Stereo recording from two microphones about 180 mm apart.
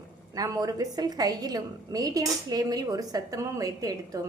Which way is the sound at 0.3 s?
20° right (ahead or behind).